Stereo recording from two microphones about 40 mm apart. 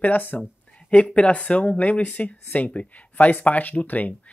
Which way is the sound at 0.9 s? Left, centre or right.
Left.